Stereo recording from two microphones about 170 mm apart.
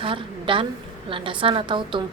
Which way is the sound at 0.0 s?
30° right (ahead or behind).